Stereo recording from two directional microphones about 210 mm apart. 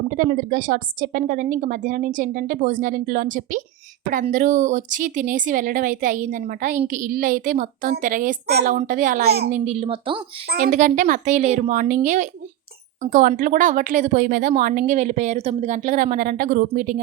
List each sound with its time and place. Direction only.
0.1 s speech: 40° right (ahead or behind)
9.5 s a woman's voice: 35° right (ahead or behind)